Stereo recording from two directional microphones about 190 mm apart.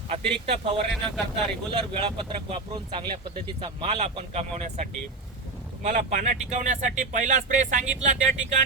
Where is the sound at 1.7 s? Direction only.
30° right (ahead or behind).